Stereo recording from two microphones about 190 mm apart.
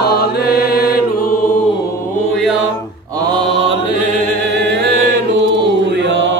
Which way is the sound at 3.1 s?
25° right (ahead or behind).